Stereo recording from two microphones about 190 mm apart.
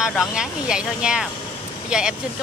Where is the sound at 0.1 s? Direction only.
Centre (ahead or behind).